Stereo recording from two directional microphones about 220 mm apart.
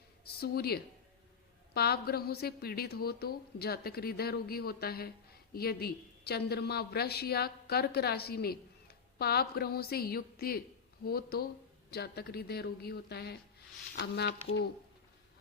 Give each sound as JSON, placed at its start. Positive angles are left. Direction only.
{"t": 0.3, "sound": "a woman's voice", "side_deg": 45}